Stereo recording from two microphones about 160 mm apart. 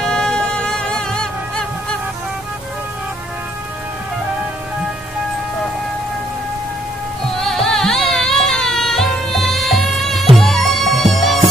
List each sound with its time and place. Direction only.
0.0 s music: 5° left (ahead or behind)
7.3 s music: centre (ahead or behind)